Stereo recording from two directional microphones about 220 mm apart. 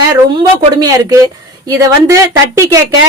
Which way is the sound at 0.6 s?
15° right (ahead or behind).